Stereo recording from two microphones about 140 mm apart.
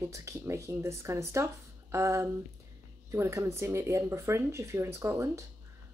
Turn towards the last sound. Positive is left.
turn(degrees=-20)  # may be behind; listen again after turning